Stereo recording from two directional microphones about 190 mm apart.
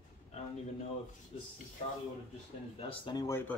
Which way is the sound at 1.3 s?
35° left (ahead or behind).